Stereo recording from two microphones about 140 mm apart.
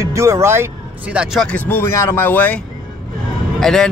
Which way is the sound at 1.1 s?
5° right (ahead or behind).